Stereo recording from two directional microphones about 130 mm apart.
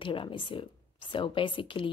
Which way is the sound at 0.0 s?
40° left (ahead or behind).